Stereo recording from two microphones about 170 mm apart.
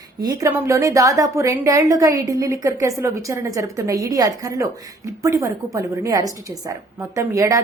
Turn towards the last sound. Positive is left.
turn(degrees=-20)  # may be behind; listen again after turning